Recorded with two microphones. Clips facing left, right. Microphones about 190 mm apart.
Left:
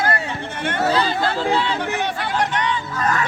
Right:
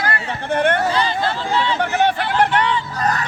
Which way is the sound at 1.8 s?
60° right (ahead or behind).